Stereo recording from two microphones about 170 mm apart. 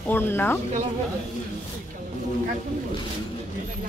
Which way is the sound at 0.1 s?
10° left (ahead or behind).